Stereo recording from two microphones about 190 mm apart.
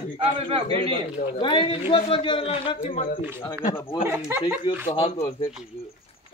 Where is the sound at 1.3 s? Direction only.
25° left (ahead or behind).